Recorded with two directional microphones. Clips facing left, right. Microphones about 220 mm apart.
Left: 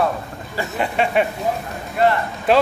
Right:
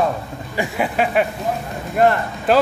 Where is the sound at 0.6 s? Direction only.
5° right (ahead or behind).